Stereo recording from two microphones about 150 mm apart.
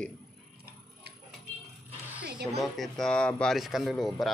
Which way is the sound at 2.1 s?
10° right (ahead or behind).